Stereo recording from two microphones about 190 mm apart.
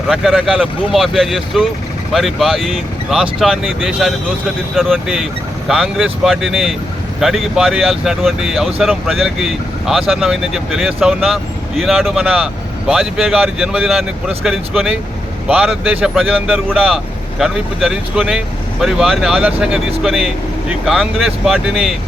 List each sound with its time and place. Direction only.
0.1 s speech: 5° right (ahead or behind)